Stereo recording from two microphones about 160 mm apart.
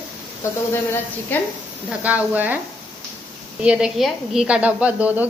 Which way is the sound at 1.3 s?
10° left (ahead or behind).